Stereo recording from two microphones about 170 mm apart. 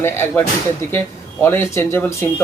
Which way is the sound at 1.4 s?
15° left (ahead or behind).